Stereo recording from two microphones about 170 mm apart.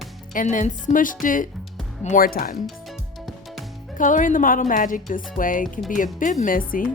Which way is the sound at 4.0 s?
50° left (ahead or behind).